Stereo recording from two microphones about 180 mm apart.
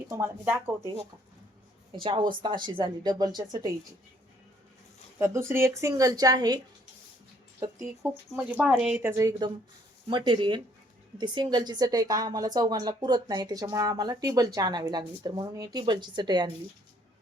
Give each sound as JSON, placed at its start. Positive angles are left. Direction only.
{"t": 0.1, "sound": "speech", "side_deg": -10}
{"t": 1.9, "sound": "a woman's voice", "side_deg": -30}
{"t": 5.2, "sound": "speech", "side_deg": -15}
{"t": 7.6, "sound": "a woman's voice", "side_deg": -15}